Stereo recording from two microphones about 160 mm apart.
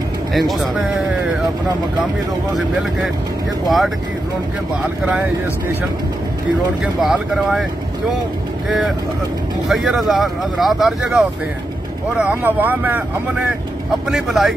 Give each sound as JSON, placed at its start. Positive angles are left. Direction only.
{"t": 0.3, "sound": "speech", "side_deg": 0}
{"t": 3.6, "sound": "speech", "side_deg": 0}
{"t": 6.8, "sound": "speech", "side_deg": -5}
{"t": 8.6, "sound": "speech", "side_deg": 0}